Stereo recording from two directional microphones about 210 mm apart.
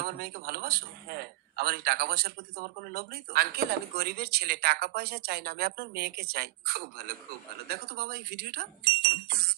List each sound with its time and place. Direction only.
0.0 s speech: 45° right (ahead or behind)